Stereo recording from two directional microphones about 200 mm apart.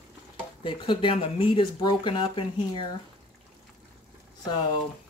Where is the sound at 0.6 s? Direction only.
25° left (ahead or behind).